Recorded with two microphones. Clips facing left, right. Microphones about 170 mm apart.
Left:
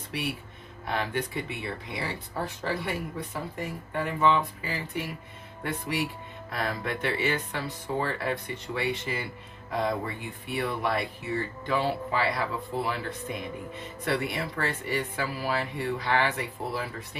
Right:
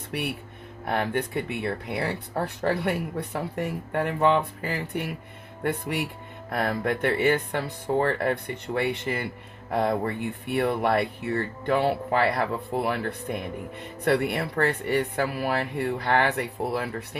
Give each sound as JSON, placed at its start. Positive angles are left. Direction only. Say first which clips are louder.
{"t": 0.1, "sound": "speech", "louder": "right 2 dB", "side_deg": -55}
{"t": 6.5, "sound": "speech", "louder": "right 5 dB", "side_deg": -55}